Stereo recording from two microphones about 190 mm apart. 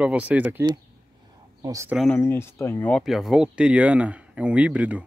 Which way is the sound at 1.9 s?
10° left (ahead or behind).